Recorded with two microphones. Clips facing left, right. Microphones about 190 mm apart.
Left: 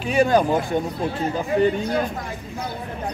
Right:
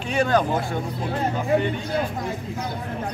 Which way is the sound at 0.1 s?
10° left (ahead or behind).